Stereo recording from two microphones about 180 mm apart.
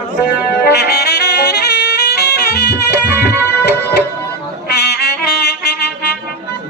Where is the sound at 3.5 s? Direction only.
65° left (ahead or behind).